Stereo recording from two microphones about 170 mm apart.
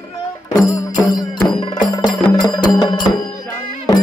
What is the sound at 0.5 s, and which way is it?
Music, 20° left (ahead or behind).